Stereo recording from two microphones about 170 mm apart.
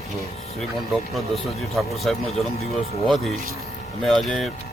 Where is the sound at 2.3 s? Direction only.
40° left (ahead or behind).